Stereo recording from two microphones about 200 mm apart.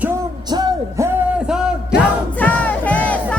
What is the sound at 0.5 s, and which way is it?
Music, 15° right (ahead or behind).